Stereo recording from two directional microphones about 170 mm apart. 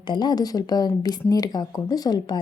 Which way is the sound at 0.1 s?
25° left (ahead or behind).